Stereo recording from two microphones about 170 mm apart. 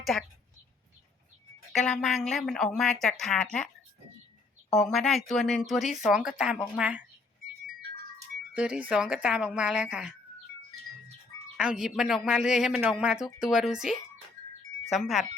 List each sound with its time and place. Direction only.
0.0 s a woman's voice: centre (ahead or behind)
1.7 s speech: centre (ahead or behind)
4.7 s speech: centre (ahead or behind)
8.5 s speech: 5° right (ahead or behind)
11.5 s speech: 5° right (ahead or behind)